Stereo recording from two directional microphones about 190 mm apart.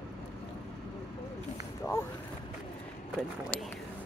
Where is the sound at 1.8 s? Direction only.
10° left (ahead or behind).